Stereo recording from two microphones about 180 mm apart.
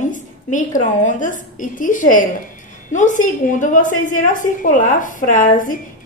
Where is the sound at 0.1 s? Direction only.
45° left (ahead or behind).